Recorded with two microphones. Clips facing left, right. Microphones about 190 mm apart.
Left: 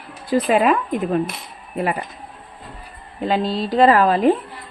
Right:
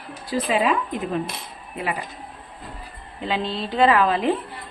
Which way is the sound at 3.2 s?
40° left (ahead or behind).